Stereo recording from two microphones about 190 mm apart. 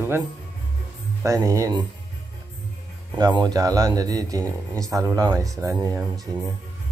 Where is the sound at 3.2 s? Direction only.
20° right (ahead or behind).